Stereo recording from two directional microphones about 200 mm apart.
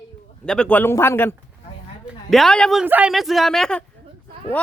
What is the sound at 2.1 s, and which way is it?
A man's voice, centre (ahead or behind).